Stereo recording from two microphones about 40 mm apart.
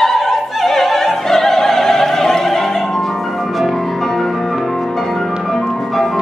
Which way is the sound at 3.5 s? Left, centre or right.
Centre.